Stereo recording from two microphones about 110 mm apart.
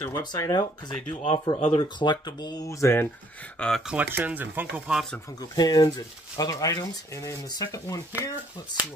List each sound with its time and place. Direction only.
0.2 s speech: 40° left (ahead or behind)
3.5 s speech: 10° left (ahead or behind)
3.8 s speech: 10° right (ahead or behind)
5.6 s speech: 35° left (ahead or behind)